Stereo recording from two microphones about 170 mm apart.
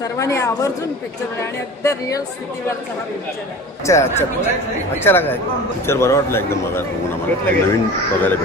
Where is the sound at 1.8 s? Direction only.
15° left (ahead or behind).